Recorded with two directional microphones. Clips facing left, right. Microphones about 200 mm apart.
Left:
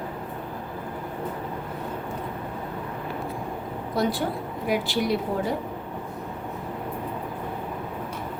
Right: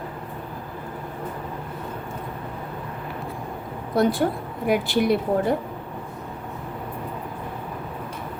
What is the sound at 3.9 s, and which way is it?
Speech, 55° right (ahead or behind).